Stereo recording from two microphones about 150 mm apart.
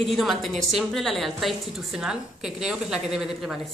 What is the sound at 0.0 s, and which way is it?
A woman's voice, centre (ahead or behind).